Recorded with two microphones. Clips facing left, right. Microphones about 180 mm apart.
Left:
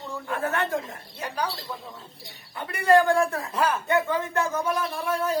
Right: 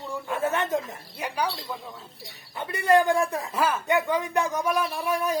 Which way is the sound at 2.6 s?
20° right (ahead or behind).